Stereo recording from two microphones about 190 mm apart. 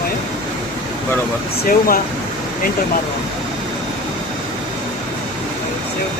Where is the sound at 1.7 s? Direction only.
50° left (ahead or behind).